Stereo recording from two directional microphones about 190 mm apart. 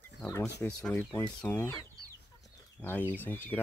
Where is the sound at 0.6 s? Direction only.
5° left (ahead or behind).